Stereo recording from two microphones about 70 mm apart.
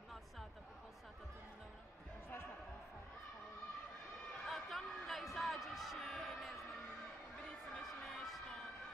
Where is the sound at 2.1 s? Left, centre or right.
Left.